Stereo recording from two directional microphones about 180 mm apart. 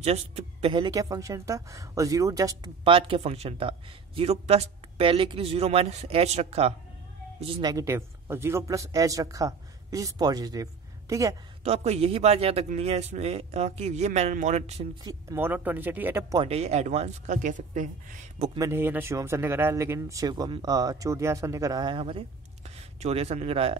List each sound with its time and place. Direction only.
0.0 s speech: 35° right (ahead or behind)
7.6 s speech: 15° right (ahead or behind)
11.6 s speech: 35° right (ahead or behind)
15.0 s speech: 15° right (ahead or behind)
16.3 s speech: 35° right (ahead or behind)
18.7 s speech: 10° right (ahead or behind); by 23.8 s 35° right (ahead or behind)